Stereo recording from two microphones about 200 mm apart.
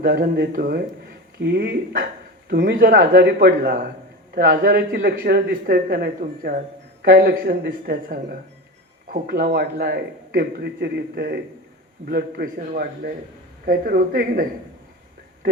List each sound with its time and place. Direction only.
0.0 s a man's voice: 50° right (ahead or behind)